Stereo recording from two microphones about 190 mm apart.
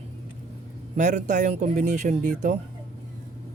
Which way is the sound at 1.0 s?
40° right (ahead or behind).